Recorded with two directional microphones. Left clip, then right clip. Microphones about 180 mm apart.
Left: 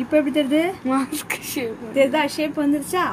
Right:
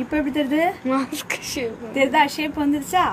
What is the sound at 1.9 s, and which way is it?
Speech, 50° right (ahead or behind).